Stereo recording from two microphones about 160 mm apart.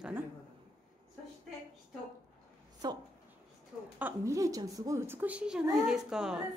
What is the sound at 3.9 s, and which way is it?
A woman's voice, 15° right (ahead or behind).